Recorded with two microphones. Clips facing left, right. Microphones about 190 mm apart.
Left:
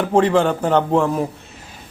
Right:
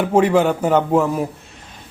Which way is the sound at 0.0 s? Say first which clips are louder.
Right 1 dB; 10° right (ahead or behind).